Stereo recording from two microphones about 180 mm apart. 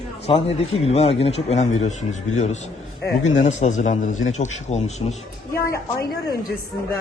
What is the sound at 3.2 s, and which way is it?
Speech, 40° left (ahead or behind).